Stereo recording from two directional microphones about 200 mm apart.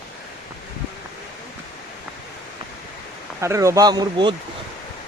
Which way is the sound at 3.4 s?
15° right (ahead or behind).